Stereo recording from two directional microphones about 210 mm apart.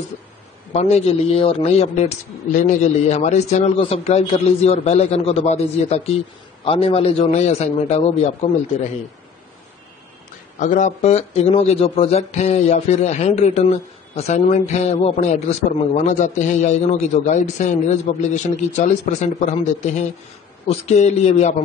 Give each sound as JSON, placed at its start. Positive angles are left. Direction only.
{"t": 0.7, "sound": "a man's voice", "side_deg": 30}
{"t": 10.6, "sound": "speech", "side_deg": 35}